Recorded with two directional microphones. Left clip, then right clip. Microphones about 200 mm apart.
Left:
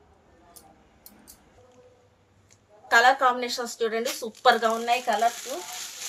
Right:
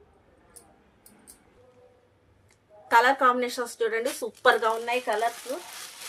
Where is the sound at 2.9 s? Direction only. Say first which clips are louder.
Left 1 dB; 55° right (ahead or behind).